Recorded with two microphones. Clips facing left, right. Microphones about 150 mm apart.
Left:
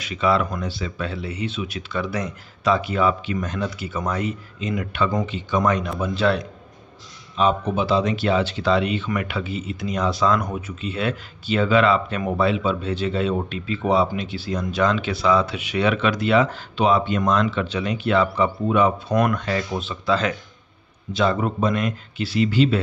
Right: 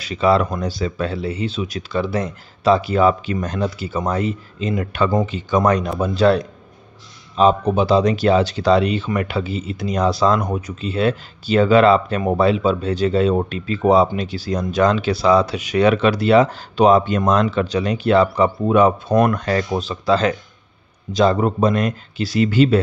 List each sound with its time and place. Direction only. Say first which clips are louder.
0.0 s speech: right 4 dB; 35° right (ahead or behind)